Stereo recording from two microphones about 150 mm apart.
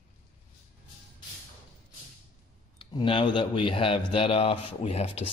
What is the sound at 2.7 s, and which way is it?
Speech, 35° left (ahead or behind).